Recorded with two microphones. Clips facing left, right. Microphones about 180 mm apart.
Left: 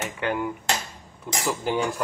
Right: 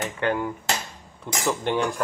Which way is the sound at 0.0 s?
15° left (ahead or behind).